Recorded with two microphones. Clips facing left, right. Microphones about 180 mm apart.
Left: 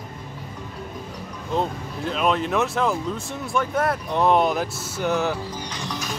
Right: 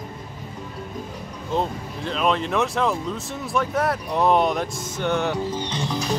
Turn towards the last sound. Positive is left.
turn(degrees=-30)  # may be behind; listen again after turning